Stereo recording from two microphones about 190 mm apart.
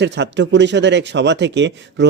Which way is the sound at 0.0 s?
65° right (ahead or behind).